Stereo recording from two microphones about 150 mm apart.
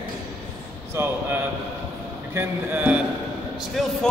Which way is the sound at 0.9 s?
15° right (ahead or behind).